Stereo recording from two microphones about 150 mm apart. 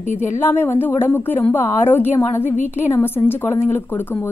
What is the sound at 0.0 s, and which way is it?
Speech, 50° left (ahead or behind).